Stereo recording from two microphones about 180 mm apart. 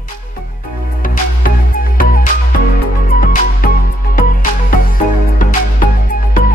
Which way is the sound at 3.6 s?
50° left (ahead or behind).